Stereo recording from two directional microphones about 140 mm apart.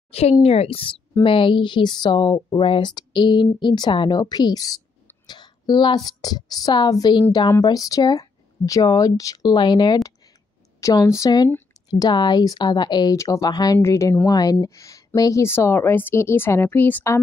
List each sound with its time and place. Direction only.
0.1 s a woman's voice: 45° left (ahead or behind); by 17.2 s 15° left (ahead or behind)